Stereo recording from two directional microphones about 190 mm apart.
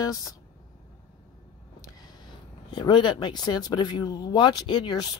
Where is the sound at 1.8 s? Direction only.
20° left (ahead or behind).